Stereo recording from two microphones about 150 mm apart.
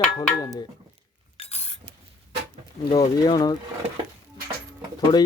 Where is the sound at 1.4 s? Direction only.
45° left (ahead or behind).